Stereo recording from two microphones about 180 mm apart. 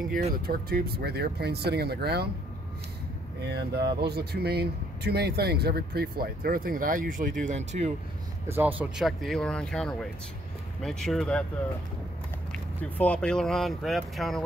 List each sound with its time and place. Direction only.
0.5 s speech: 55° right (ahead or behind)
3.4 s speech: 65° right (ahead or behind); by 7.9 s 40° right (ahead or behind)
8.5 s speech: 10° right (ahead or behind); by 11.4 s 5° left (ahead or behind)
12.9 s speech: 5° left (ahead or behind)